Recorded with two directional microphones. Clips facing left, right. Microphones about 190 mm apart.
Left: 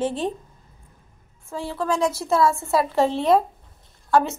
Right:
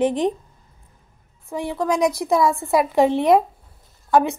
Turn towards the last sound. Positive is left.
turn(degrees=-15)  # may be behind; listen again after turning